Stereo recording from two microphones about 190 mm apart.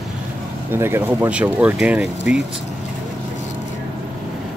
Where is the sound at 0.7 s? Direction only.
10° right (ahead or behind).